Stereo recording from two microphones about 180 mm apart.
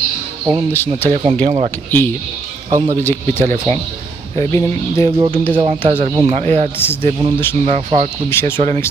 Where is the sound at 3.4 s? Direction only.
40° right (ahead or behind).